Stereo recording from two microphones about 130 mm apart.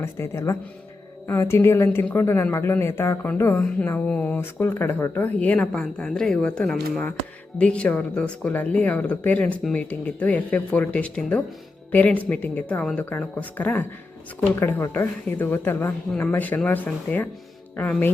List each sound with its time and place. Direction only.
0.0 s speech: 20° left (ahead or behind)